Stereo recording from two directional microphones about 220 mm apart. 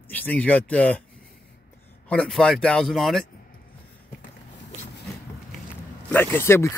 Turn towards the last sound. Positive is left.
turn(degrees=10)  # may be behind; listen again after turning